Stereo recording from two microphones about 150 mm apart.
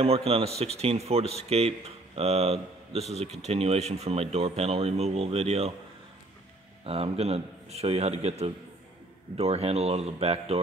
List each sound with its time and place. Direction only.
0.0 s a man's voice: 40° right (ahead or behind)
6.9 s speech: 40° right (ahead or behind)